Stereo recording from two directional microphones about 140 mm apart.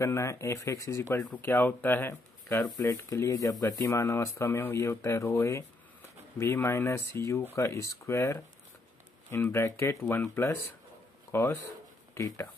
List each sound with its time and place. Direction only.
0.0 s speech: 20° left (ahead or behind)